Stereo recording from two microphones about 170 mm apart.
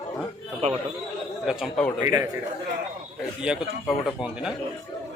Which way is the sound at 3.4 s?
Centre (ahead or behind).